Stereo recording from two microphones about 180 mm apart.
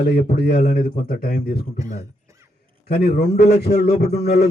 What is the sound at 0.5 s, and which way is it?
Speech, 55° left (ahead or behind).